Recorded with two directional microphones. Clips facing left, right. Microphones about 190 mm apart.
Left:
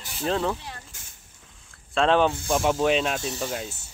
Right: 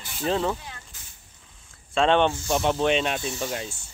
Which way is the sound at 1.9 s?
Centre (ahead or behind).